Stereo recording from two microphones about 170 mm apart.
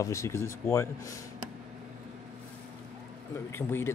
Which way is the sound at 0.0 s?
15° left (ahead or behind).